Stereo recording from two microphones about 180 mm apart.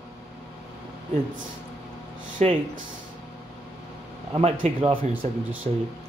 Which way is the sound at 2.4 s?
35° right (ahead or behind).